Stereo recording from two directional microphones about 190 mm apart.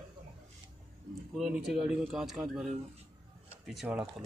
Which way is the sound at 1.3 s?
5° right (ahead or behind).